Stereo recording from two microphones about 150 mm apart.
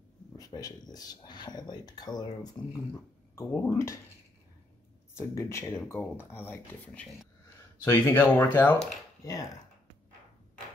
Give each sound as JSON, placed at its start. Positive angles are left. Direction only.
{"t": 0.4, "sound": "speech", "side_deg": 25}
{"t": 5.1, "sound": "speech", "side_deg": 20}
{"t": 9.2, "sound": "speech", "side_deg": 25}